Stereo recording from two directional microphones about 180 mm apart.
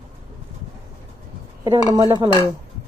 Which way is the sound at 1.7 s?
20° right (ahead or behind).